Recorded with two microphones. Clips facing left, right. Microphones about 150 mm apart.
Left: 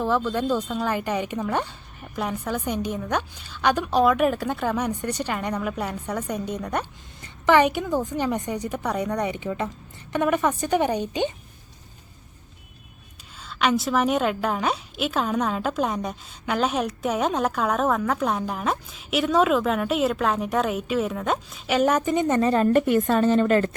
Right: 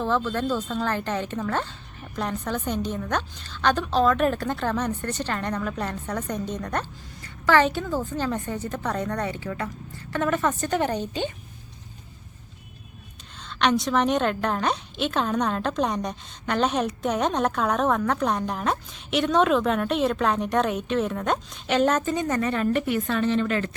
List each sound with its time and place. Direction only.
0.0 s a woman's voice: 10° left (ahead or behind)
13.4 s a woman's voice: 5° left (ahead or behind); by 22.4 s 20° left (ahead or behind)
22.4 s a woman's voice: 35° left (ahead or behind)